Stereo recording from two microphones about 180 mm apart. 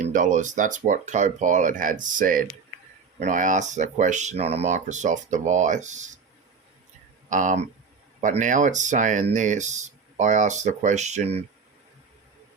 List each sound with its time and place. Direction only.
0.0 s speech: 45° right (ahead or behind)
7.3 s speech: 45° right (ahead or behind)